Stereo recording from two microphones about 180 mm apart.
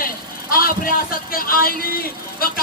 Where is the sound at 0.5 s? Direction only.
55° left (ahead or behind).